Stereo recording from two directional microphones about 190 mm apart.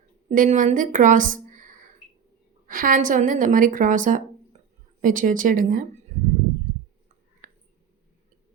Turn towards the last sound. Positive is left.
turn(degrees=-45)  # may be behind; listen again after turning